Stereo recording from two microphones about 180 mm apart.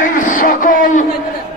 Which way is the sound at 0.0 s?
50° left (ahead or behind).